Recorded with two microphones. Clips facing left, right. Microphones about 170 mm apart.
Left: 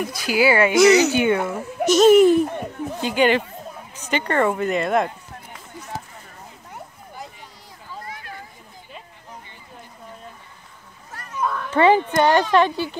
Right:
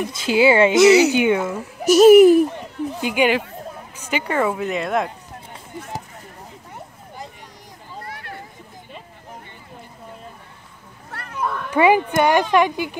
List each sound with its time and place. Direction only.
0.1 s speech: 25° right (ahead or behind)
0.7 s speech: 5° right (ahead or behind)
8.0 s a sound: 60° right (ahead or behind)
11.1 s children playing: 60° right (ahead or behind)
11.4 s cat: 5° right (ahead or behind)
12.2 s speech: 10° right (ahead or behind)